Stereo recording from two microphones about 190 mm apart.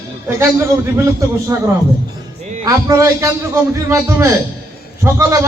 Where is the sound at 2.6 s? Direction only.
15° right (ahead or behind).